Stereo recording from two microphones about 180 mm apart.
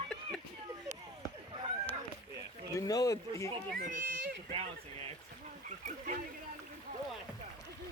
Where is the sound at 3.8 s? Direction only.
45° right (ahead or behind).